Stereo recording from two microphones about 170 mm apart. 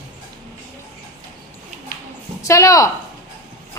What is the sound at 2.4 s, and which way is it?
Speech, 20° left (ahead or behind).